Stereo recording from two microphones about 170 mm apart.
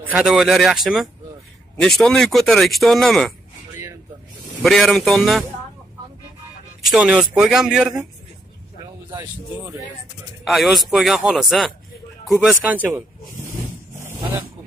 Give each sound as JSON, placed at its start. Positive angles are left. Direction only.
{"t": 0.0, "sound": "speech", "side_deg": -5}
{"t": 1.8, "sound": "speech", "side_deg": 0}
{"t": 3.7, "sound": "a sound", "side_deg": -15}
{"t": 4.6, "sound": "speech", "side_deg": 0}
{"t": 6.9, "sound": "speech", "side_deg": 0}
{"t": 10.4, "sound": "speech", "side_deg": 0}